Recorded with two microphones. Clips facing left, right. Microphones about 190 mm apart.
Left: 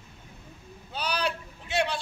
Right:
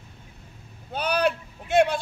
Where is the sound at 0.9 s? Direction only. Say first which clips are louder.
Right 7 dB; 55° right (ahead or behind).